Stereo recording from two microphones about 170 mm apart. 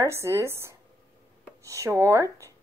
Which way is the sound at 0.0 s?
15° right (ahead or behind).